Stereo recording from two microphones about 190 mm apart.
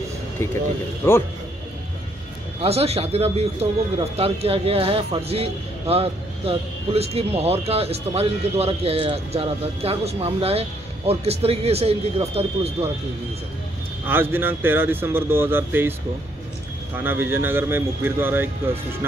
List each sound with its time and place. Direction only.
1.0 s speech: 15° left (ahead or behind)
2.6 s a man's voice: 30° right (ahead or behind)
14.0 s speech: 10° right (ahead or behind)
16.9 s speech: 10° right (ahead or behind)